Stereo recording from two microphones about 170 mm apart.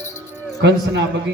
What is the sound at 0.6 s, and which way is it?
Speech, 90° right.